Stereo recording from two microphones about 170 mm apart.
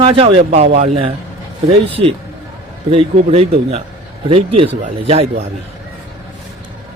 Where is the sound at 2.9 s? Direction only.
35° right (ahead or behind).